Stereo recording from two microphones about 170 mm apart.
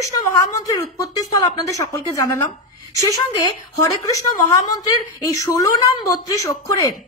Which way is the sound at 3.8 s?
20° left (ahead or behind).